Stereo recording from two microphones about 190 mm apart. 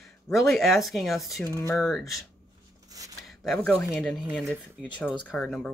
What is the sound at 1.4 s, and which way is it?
Speech, 15° right (ahead or behind).